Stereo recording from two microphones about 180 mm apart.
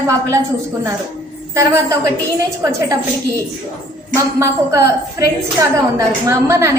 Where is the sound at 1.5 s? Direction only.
15° right (ahead or behind).